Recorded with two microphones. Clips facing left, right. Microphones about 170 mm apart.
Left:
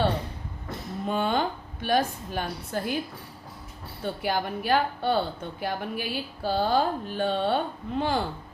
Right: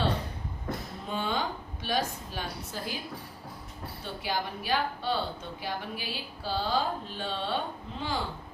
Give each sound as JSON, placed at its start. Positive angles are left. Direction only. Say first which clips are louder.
{"t": 1.1, "sound": "a woman's voice", "louder": "left 5 dB", "side_deg": 55}
{"t": 4.0, "sound": "a woman's voice", "louder": "left 6 dB", "side_deg": 55}